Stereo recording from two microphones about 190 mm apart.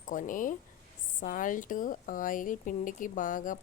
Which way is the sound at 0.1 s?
45° left (ahead or behind).